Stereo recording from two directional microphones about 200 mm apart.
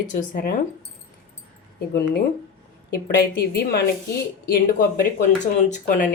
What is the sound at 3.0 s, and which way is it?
Speech, 55° left (ahead or behind).